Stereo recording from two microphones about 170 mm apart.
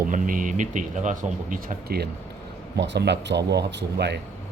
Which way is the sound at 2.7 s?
85° right.